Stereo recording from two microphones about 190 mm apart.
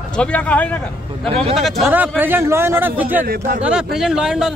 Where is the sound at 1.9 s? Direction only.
10° right (ahead or behind).